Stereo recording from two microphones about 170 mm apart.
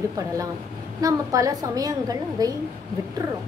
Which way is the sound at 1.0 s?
20° right (ahead or behind).